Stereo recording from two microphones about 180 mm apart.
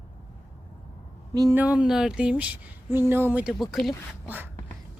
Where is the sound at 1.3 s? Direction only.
20° right (ahead or behind).